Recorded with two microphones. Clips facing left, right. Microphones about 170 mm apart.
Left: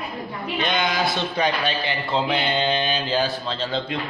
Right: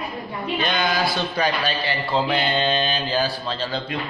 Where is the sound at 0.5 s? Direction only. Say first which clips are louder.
Even; 20° left (ahead or behind).